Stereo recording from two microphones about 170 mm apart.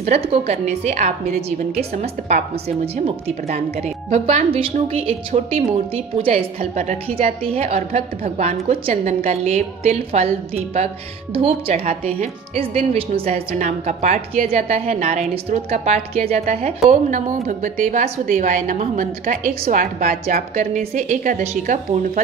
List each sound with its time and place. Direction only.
0.0 s a woman's voice: 40° right (ahead or behind)